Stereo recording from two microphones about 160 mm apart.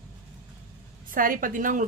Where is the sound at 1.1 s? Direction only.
60° right (ahead or behind).